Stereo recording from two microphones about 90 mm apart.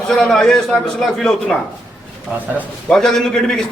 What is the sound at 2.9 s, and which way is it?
Speech, 5° left (ahead or behind).